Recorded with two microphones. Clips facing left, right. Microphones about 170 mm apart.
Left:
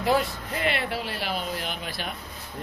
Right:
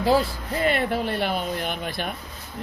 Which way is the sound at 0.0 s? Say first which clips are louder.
Right 3 dB; 30° right (ahead or behind).